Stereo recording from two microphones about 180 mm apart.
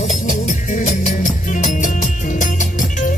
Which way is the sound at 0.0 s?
45° left (ahead or behind).